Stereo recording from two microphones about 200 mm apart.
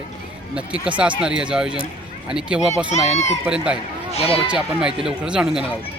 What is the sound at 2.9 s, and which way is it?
Speech, 35° left (ahead or behind).